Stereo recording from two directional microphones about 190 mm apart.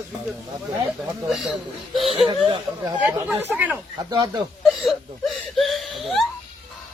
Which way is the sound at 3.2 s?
5° right (ahead or behind).